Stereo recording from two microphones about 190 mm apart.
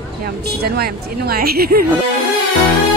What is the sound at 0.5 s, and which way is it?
A woman's voice, 55° right (ahead or behind).